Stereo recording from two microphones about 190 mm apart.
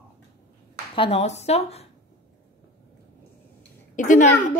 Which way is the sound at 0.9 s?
30° left (ahead or behind).